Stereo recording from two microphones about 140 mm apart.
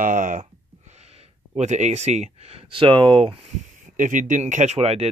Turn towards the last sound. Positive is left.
turn(degrees=-50)  # may be behind; listen again after turning